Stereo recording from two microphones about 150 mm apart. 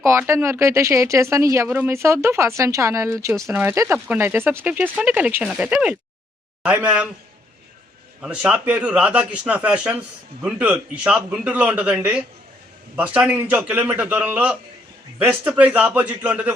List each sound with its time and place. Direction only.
0.0 s speech: 15° right (ahead or behind)
8.2 s speech: 10° right (ahead or behind)